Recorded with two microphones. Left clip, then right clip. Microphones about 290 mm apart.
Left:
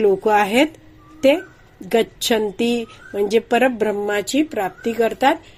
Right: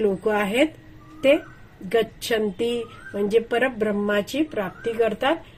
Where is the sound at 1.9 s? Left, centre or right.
Left.